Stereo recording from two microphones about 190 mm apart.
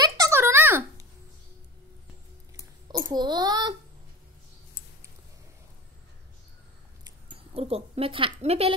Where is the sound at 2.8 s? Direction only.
20° right (ahead or behind).